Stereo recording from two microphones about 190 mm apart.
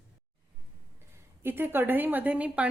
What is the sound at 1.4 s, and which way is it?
A woman's voice, 10° right (ahead or behind).